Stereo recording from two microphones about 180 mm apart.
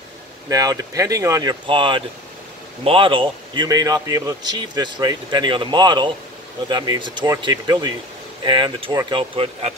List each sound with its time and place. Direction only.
0.5 s speech: 20° right (ahead or behind)